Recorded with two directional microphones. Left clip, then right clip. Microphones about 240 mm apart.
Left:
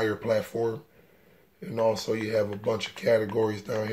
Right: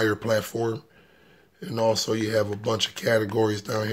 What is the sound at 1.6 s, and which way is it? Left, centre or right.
Speech, right.